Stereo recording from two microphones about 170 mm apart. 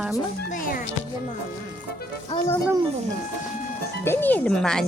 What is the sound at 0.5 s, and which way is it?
Speech, 50° left (ahead or behind).